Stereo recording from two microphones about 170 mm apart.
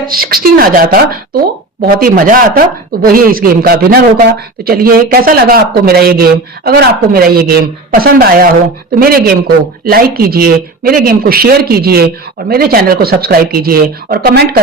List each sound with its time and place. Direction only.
0.1 s speech: 60° right (ahead or behind)